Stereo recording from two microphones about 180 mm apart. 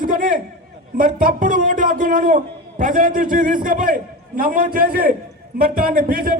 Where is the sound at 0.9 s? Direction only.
55° right (ahead or behind).